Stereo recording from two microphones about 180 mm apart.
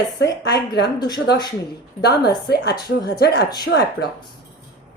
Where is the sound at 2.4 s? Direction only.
65° left (ahead or behind).